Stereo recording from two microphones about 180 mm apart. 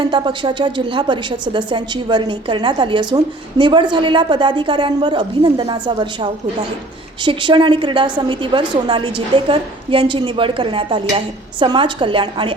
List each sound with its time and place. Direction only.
0.0 s a woman's voice: 25° right (ahead or behind)